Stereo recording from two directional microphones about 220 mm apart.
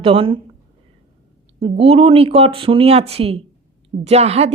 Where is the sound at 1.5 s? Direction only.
25° right (ahead or behind).